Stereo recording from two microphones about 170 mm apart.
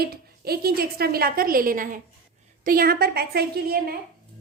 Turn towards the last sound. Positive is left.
turn(degrees=-65)  # may be behind; listen again after turning